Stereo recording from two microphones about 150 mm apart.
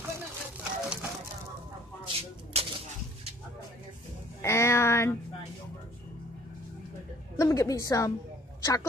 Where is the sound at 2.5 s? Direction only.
45° right (ahead or behind).